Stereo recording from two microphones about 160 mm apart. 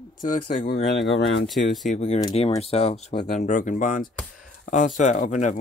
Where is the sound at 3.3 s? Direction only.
50° left (ahead or behind).